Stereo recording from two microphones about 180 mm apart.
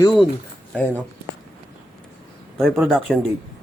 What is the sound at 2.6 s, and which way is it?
Speech, centre (ahead or behind).